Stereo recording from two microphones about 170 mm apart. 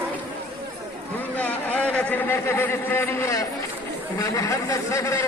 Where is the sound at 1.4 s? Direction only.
10° left (ahead or behind).